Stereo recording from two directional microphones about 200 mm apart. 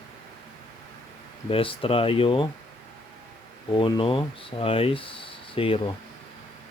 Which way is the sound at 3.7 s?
25° left (ahead or behind).